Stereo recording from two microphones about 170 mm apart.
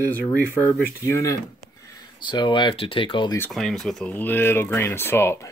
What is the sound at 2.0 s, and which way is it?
Speech, 25° left (ahead or behind).